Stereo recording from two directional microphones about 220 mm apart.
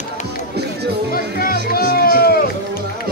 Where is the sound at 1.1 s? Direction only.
40° left (ahead or behind).